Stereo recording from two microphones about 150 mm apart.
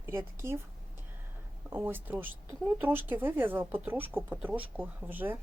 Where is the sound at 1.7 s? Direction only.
15° right (ahead or behind).